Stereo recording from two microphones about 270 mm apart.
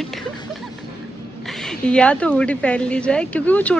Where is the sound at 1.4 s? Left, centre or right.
Centre.